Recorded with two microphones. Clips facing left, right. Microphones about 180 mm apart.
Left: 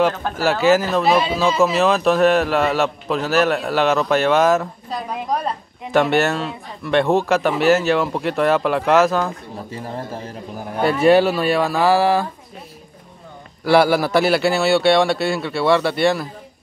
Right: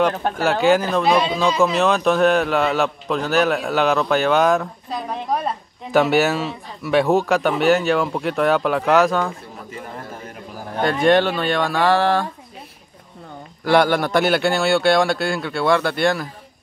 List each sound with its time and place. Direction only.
0.4 s speech: centre (ahead or behind)
9.7 s speech: 30° left (ahead or behind)
10.8 s speech: 5° left (ahead or behind)
13.7 s speech: 5° left (ahead or behind)